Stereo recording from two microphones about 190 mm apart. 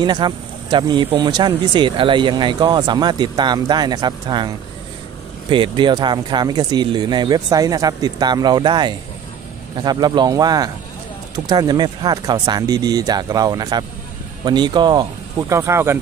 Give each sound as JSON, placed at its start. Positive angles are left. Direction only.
{"t": 0.0, "sound": "speech", "side_deg": -25}